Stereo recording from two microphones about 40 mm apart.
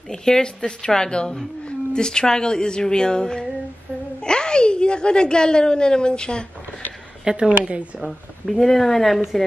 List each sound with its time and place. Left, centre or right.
0.1 s a woman's voice: centre
2.0 s a sound: centre
4.2 s a woman's voice: left
7.2 s speech: right
8.5 s speech: centre